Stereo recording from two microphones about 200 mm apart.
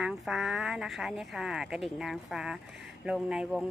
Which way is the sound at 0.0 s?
Centre (ahead or behind).